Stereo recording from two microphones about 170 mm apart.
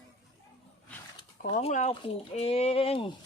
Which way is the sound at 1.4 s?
40° left (ahead or behind).